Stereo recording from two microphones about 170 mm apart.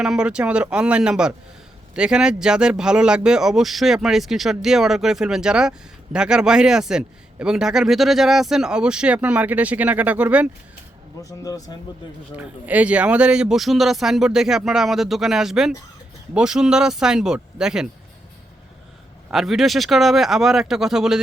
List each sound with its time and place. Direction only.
0.0 s a man's voice: 5° right (ahead or behind)
11.2 s speech: 20° left (ahead or behind)
12.4 s a man's voice: 10° right (ahead or behind)
19.3 s a man's voice: centre (ahead or behind)